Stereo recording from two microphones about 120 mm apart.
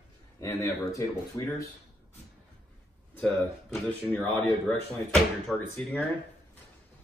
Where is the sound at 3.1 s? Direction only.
5° left (ahead or behind).